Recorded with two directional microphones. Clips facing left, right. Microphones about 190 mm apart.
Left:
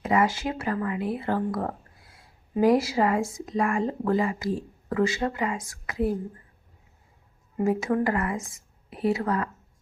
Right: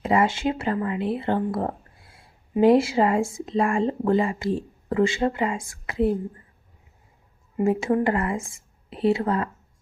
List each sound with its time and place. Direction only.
0.0 s speech: 25° right (ahead or behind)
7.6 s speech: 25° right (ahead or behind)